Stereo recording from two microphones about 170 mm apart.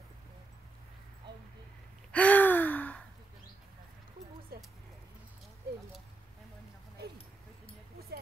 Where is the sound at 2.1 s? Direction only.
10° left (ahead or behind).